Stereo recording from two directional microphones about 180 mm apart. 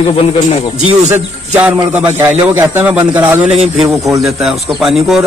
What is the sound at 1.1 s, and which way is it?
A man's voice, 10° right (ahead or behind).